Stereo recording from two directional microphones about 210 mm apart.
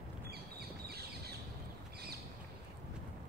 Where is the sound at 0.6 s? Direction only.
50° right (ahead or behind).